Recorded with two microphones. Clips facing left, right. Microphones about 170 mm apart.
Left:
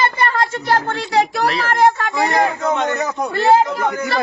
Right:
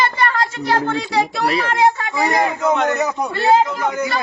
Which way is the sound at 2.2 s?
5° right (ahead or behind).